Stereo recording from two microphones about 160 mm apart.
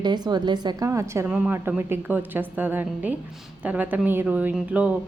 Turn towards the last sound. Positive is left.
turn(degrees=-10)  # may be behind; listen again after turning